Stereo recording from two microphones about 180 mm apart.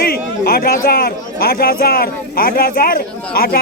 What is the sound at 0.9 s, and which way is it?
A man's voice, 60° left (ahead or behind).